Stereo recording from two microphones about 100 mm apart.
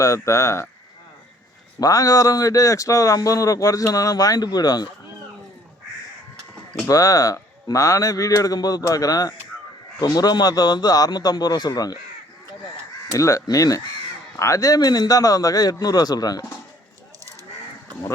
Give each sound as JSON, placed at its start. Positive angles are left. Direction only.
{"t": 0.0, "sound": "speech", "side_deg": 30}
{"t": 1.8, "sound": "speech", "side_deg": 35}
{"t": 6.8, "sound": "speech", "side_deg": 35}
{"t": 13.1, "sound": "speech", "side_deg": 35}